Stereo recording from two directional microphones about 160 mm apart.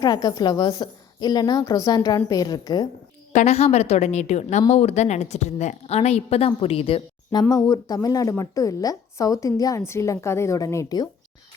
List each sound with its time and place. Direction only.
0.0 s a woman's voice: 25° left (ahead or behind)
3.3 s a woman's voice: 40° left (ahead or behind)
7.5 s a woman's voice: 25° left (ahead or behind)